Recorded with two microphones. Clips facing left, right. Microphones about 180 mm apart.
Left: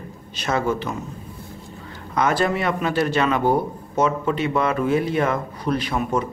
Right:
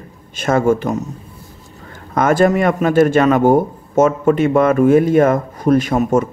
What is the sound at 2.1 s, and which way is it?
A man's voice, 50° right (ahead or behind).